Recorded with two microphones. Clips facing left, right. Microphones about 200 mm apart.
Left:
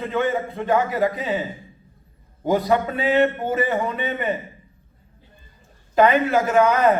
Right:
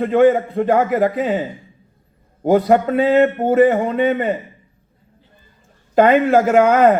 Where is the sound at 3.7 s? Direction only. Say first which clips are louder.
Right 8 dB; 60° right (ahead or behind).